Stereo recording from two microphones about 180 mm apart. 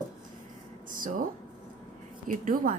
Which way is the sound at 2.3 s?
50° right (ahead or behind).